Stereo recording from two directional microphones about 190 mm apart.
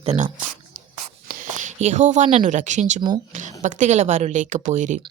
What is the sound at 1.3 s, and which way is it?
Speech, 45° right (ahead or behind).